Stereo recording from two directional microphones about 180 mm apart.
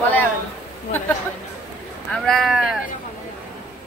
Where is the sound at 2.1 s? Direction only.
Centre (ahead or behind).